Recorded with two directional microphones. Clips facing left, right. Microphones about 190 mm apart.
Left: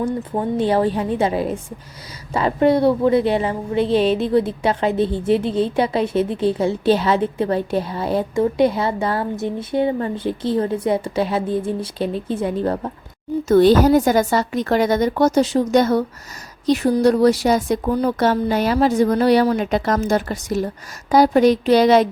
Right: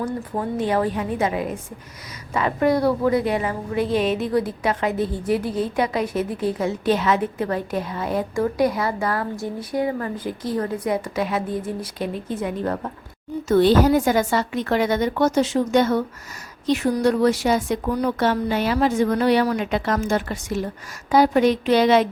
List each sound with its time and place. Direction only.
0.0 s a woman's voice: 25° left (ahead or behind)
13.5 s speech: 40° left (ahead or behind)